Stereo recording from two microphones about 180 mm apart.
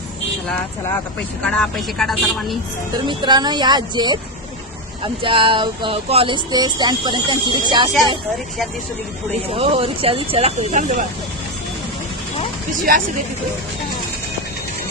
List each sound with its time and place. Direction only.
1.5 s a man's voice: 5° left (ahead or behind)
3.1 s speech: 25° right (ahead or behind)
5.2 s speech: 30° right (ahead or behind)
9.5 s speech: 30° right (ahead or behind)
12.9 s speech: 55° right (ahead or behind)